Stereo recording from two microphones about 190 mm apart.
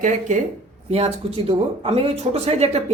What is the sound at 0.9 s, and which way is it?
Speech, 30° right (ahead or behind).